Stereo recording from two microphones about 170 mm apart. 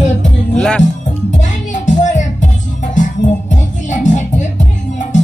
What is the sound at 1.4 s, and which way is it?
Music, 45° left (ahead or behind).